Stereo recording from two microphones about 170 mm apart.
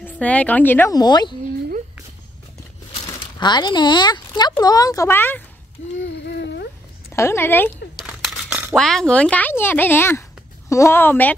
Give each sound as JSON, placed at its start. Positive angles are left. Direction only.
{"t": 0.0, "sound": "a woman's voice", "side_deg": 10}
{"t": 0.9, "sound": "speech", "side_deg": 25}
{"t": 3.1, "sound": "speech", "side_deg": 25}
{"t": 5.9, "sound": "a sound", "side_deg": 90}
{"t": 7.1, "sound": "speech", "side_deg": 15}
{"t": 8.0, "sound": "a sound", "side_deg": -5}
{"t": 8.7, "sound": "speech", "side_deg": 5}